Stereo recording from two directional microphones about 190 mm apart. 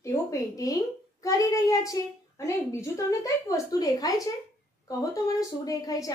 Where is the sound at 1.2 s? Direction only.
15° left (ahead or behind).